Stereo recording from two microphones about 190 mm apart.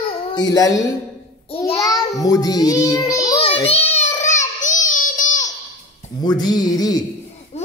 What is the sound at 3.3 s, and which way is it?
Child singing, 30° left (ahead or behind).